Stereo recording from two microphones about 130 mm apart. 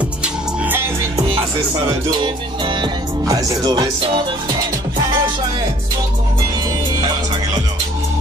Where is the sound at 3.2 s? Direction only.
30° right (ahead or behind).